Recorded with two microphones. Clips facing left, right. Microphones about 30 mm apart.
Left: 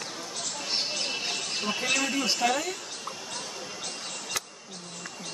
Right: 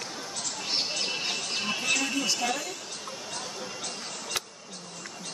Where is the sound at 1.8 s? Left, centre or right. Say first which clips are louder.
Left 1 dB; centre.